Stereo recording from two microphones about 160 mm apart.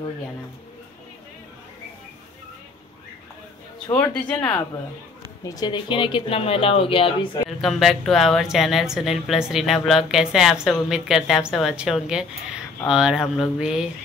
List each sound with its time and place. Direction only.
3.9 s speech: 10° left (ahead or behind); by 7.1 s 35° left (ahead or behind)
7.4 s speech: centre (ahead or behind)